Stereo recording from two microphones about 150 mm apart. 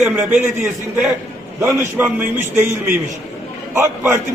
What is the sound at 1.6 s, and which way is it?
A man's voice, 15° right (ahead or behind).